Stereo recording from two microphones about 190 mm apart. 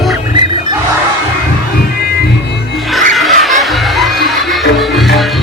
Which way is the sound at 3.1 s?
Centre (ahead or behind).